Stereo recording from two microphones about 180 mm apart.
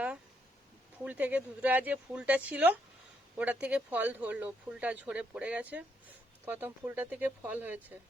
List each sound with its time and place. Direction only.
1.0 s speech: 10° right (ahead or behind)